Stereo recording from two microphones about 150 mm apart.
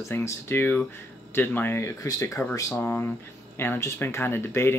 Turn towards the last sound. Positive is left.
turn(degrees=15)  # may be behind; listen again after turning